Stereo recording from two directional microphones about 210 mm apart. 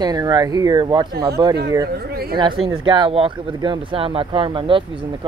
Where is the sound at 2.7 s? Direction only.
25° right (ahead or behind).